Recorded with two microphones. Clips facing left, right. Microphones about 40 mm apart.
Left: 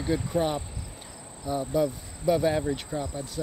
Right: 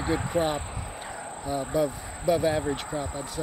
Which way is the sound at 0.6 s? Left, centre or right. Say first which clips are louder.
Right 3 dB; right.